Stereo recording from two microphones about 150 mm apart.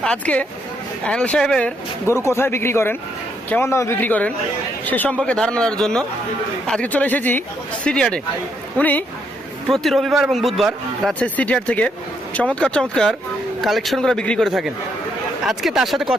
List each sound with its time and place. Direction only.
0.0 s speech: 10° left (ahead or behind)
2.0 s a man's voice: 15° left (ahead or behind)
9.6 s a man's voice: centre (ahead or behind)